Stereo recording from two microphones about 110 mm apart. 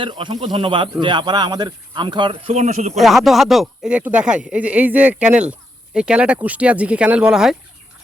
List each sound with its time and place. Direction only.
0.0 s speech: 45° right (ahead or behind); by 3.0 s 85° right
3.0 s speech: centre (ahead or behind)